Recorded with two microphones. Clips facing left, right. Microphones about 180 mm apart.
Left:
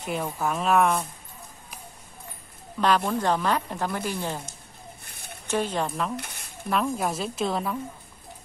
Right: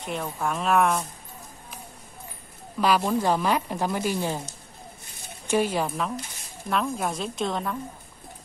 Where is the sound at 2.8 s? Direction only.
5° right (ahead or behind).